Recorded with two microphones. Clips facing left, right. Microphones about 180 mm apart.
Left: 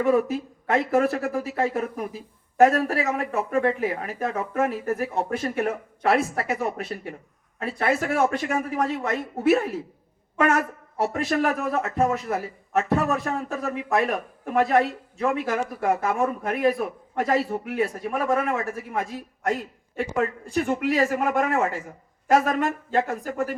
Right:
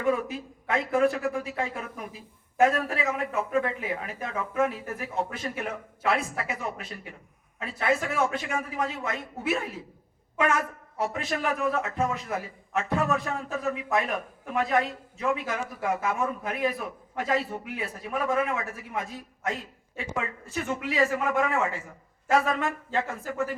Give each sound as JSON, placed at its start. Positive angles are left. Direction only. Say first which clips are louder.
{"t": 0.0, "sound": "a man's voice", "louder": "left 6 dB", "side_deg": 45}
{"t": 20.0, "sound": "speech", "louder": "left 8 dB", "side_deg": 55}